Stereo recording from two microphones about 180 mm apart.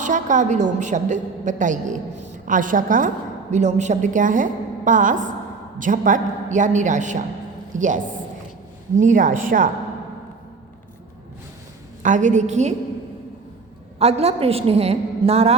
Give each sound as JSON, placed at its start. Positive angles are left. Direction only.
{"t": 0.0, "sound": "a woman's voice", "side_deg": -45}
{"t": 12.0, "sound": "a woman's voice", "side_deg": -45}
{"t": 14.0, "sound": "a woman's voice", "side_deg": -35}